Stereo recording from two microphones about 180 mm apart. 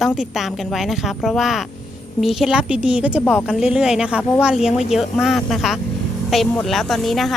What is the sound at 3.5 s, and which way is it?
Speech, 5° right (ahead or behind).